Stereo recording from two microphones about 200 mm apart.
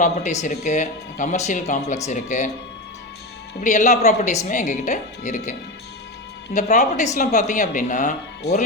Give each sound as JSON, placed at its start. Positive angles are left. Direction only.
{"t": 0.0, "sound": "speech", "side_deg": 35}
{"t": 3.6, "sound": "speech", "side_deg": 35}